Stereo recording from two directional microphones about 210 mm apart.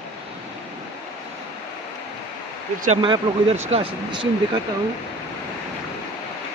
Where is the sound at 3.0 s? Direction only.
25° right (ahead or behind).